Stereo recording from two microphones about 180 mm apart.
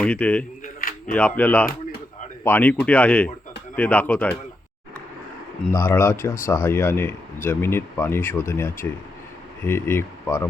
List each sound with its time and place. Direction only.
0.0 s speech: 5° left (ahead or behind)
0.6 s a sound: 50° left (ahead or behind)
1.1 s speech: 5° left (ahead or behind)
5.7 s speech: 15° left (ahead or behind)